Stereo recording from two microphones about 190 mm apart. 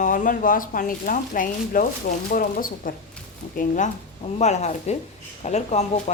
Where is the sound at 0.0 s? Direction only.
45° left (ahead or behind).